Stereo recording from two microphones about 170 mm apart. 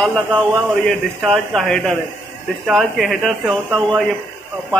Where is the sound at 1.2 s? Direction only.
Centre (ahead or behind).